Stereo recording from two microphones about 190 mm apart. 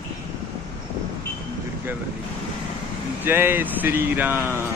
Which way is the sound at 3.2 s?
10° right (ahead or behind).